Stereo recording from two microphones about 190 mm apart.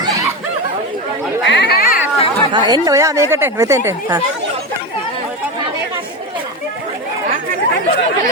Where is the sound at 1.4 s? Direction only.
65° left (ahead or behind).